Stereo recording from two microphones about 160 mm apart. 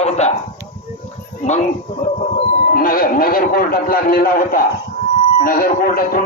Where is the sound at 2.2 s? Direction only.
55° left (ahead or behind).